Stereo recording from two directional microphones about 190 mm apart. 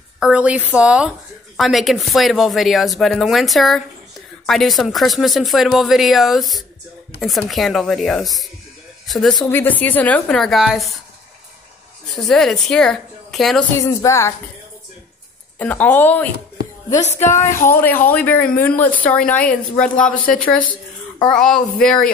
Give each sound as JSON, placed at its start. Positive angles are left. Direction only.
{"t": 0.2, "sound": "speech", "side_deg": -5}
{"t": 12.2, "sound": "speech", "side_deg": 0}
{"t": 13.7, "sound": "speech", "side_deg": 15}
{"t": 15.6, "sound": "speech", "side_deg": 10}
{"t": 16.9, "sound": "speech", "side_deg": 35}
{"t": 17.6, "sound": "speech", "side_deg": 10}